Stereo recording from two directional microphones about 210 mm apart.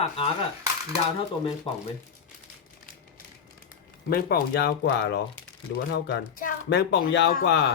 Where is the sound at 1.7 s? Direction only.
25° left (ahead or behind).